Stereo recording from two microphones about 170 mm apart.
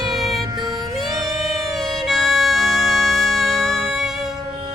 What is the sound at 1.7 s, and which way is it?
Music, centre (ahead or behind).